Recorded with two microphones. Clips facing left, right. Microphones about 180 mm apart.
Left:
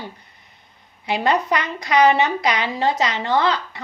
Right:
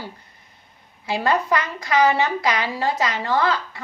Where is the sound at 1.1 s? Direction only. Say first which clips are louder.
Left 1 dB; 20° left (ahead or behind).